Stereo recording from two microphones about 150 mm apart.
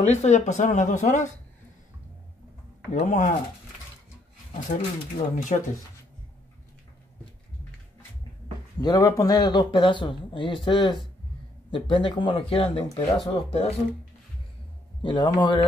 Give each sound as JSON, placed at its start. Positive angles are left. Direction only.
{"t": 0.0, "sound": "speech", "side_deg": 50}
{"t": 2.9, "sound": "speech", "side_deg": 55}
{"t": 4.6, "sound": "speech", "side_deg": 55}
{"t": 8.8, "sound": "a man's voice", "side_deg": 25}
{"t": 15.0, "sound": "a man's voice", "side_deg": 30}